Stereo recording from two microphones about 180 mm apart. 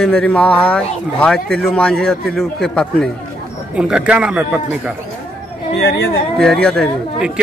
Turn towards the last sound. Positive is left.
turn(degrees=5)  # may be behind; listen again after turning